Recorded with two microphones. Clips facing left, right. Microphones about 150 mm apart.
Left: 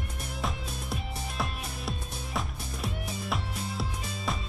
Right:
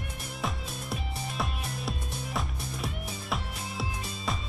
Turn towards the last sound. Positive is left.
turn(degrees=0)  # may be behind; listen again after turning